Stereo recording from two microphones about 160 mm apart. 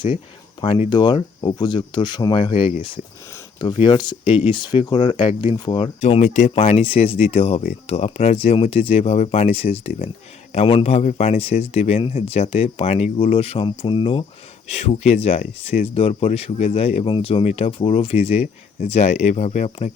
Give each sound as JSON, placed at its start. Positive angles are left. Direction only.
{"t": 0.6, "sound": "speech", "side_deg": 35}
{"t": 6.0, "sound": "speech", "side_deg": 45}